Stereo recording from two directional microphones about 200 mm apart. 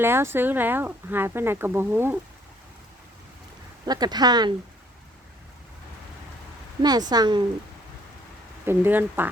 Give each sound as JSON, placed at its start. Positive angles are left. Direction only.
{"t": 0.0, "sound": "speech", "side_deg": -10}
{"t": 3.8, "sound": "speech", "side_deg": -20}
{"t": 6.8, "sound": "speech", "side_deg": -20}
{"t": 8.6, "sound": "speech", "side_deg": -10}